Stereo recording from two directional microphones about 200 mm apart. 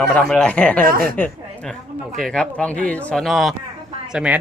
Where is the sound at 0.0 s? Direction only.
5° left (ahead or behind).